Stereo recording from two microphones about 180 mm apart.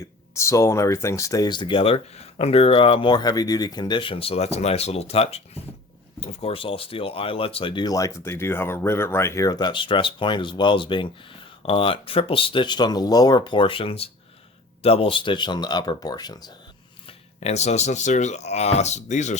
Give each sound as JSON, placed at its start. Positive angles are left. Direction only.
{"t": 0.3, "sound": "speech", "side_deg": 15}
{"t": 17.1, "sound": "speech", "side_deg": 35}